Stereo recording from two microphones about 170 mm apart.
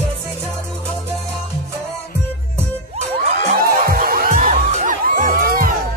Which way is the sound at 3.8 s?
60° right (ahead or behind).